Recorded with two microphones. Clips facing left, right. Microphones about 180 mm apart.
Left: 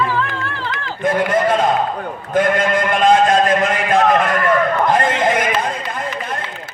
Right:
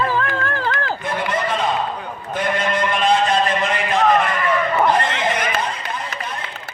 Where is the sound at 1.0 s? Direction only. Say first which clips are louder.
Left 10 dB; 50° left (ahead or behind).